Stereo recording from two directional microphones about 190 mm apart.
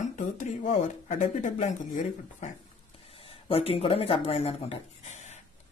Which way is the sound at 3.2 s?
30° left (ahead or behind).